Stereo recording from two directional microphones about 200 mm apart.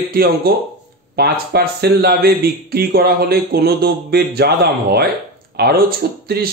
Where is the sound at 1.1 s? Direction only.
50° right (ahead or behind).